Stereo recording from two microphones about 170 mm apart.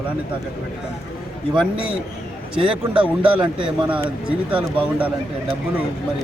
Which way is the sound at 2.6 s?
5° right (ahead or behind).